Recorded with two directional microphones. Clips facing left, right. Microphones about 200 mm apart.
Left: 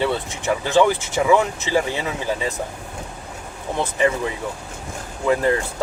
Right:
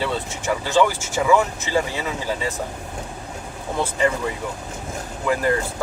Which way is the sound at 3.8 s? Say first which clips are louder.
Left 1 dB; 20° left (ahead or behind).